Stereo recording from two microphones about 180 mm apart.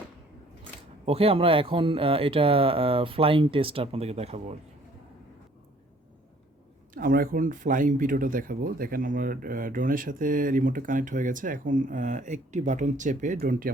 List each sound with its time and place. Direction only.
1.0 s speech: 35° right (ahead or behind)
6.9 s speech: 50° right (ahead or behind)